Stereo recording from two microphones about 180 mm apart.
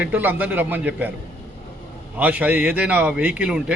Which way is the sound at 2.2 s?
10° right (ahead or behind).